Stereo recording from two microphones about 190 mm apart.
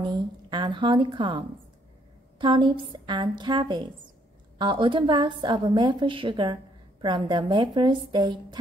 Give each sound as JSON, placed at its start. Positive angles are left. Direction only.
{"t": 0.0, "sound": "a woman's voice", "side_deg": -25}